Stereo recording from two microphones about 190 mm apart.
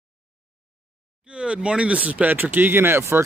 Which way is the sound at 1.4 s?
5° right (ahead or behind).